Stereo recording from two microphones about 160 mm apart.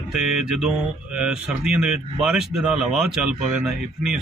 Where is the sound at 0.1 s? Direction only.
5° right (ahead or behind).